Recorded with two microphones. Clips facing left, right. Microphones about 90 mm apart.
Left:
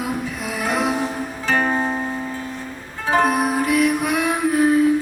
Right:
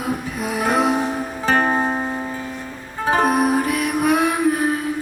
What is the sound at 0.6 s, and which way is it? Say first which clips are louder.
Music: right 3 dB; 35° right (ahead or behind).